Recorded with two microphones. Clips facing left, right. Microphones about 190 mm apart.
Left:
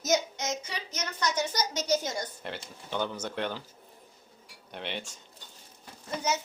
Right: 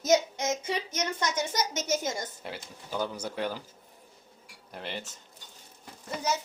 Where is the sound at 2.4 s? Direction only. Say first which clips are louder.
Left 1 dB; 5° right (ahead or behind).